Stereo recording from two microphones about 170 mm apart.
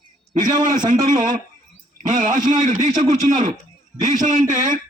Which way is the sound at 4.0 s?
50° right (ahead or behind).